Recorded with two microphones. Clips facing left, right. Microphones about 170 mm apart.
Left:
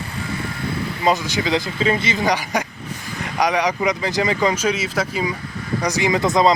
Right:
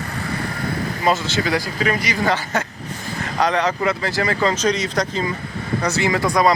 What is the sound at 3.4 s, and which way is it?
Speech, 10° left (ahead or behind).